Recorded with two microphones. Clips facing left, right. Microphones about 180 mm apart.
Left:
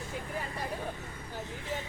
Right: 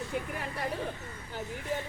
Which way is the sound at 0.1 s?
60° right (ahead or behind).